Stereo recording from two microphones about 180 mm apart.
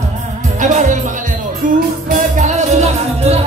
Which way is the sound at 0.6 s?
45° right (ahead or behind).